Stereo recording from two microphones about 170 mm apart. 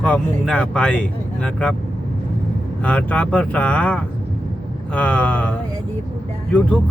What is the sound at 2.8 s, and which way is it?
Speech, 10° left (ahead or behind).